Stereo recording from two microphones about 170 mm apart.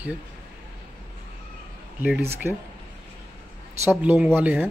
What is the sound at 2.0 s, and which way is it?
Speech, 10° right (ahead or behind).